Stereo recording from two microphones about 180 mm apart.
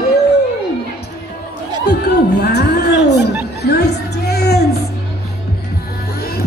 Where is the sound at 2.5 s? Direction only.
70° left (ahead or behind).